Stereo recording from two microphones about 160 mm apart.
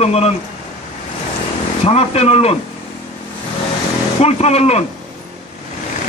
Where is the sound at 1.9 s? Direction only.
40° left (ahead or behind).